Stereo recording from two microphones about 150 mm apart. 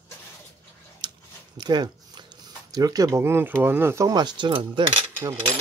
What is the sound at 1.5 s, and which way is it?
Speech, 30° right (ahead or behind).